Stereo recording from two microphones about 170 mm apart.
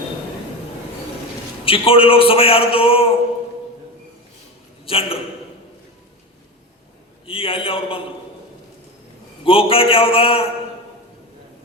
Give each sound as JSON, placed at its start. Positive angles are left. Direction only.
{"t": 1.6, "sound": "a man's voice", "side_deg": 30}
{"t": 4.9, "sound": "a man's voice", "side_deg": 35}
{"t": 7.3, "sound": "a man's voice", "side_deg": 30}
{"t": 9.4, "sound": "a man's voice", "side_deg": 30}